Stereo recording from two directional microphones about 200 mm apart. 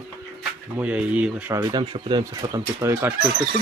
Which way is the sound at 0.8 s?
5° right (ahead or behind).